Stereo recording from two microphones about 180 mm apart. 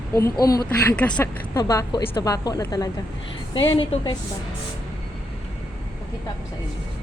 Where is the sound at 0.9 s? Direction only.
5° left (ahead or behind).